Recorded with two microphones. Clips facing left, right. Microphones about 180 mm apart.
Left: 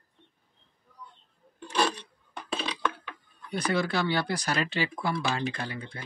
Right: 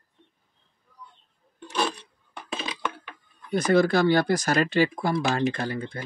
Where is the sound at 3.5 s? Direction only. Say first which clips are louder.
Right 8 dB; 45° right (ahead or behind).